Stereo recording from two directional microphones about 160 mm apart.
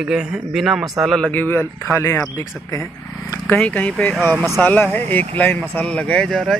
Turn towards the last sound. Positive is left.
turn(degrees=0)  # may be behind; listen again after turning